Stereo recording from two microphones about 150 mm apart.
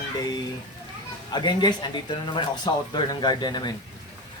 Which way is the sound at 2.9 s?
30° left (ahead or behind).